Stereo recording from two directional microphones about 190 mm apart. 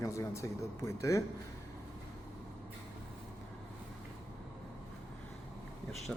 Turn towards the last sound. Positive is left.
turn(degrees=0)  # may be behind; listen again after turning